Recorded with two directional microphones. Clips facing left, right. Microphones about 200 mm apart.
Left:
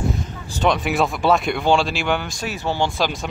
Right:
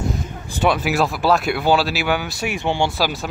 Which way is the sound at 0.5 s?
10° right (ahead or behind).